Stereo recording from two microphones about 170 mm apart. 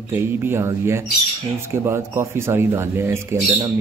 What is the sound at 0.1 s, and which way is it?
Speech, 15° right (ahead or behind).